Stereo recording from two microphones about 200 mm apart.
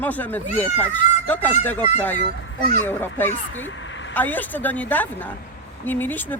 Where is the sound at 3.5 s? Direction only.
75° left (ahead or behind).